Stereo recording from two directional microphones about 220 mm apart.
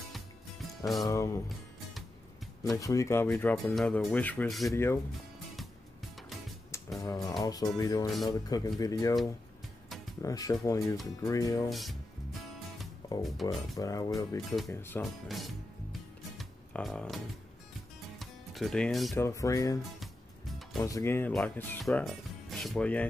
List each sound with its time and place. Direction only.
1.0 s speech: 15° left (ahead or behind)
2.6 s speech: 15° left (ahead or behind)
4.7 s speech: 10° left (ahead or behind)
7.0 s speech: 15° left (ahead or behind)
10.2 s speech: 15° left (ahead or behind)
11.7 s speech: centre (ahead or behind)
13.2 s speech: centre (ahead or behind)
13.7 s speech: 15° left (ahead or behind)
15.2 s music: centre (ahead or behind)
18.2 s music: centre (ahead or behind)
19.1 s speech: 15° left (ahead or behind)
19.8 s music: centre (ahead or behind)
20.8 s speech: 15° left (ahead or behind)